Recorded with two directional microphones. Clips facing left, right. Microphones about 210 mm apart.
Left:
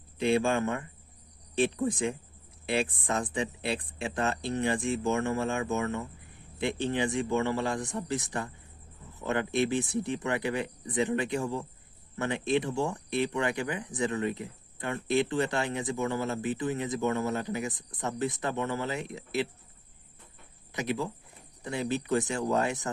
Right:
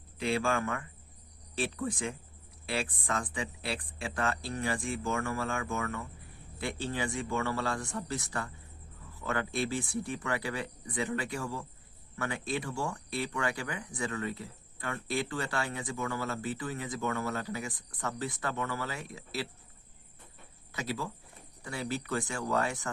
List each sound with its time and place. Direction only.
0.2 s speech: 20° left (ahead or behind)
20.7 s speech: 20° left (ahead or behind)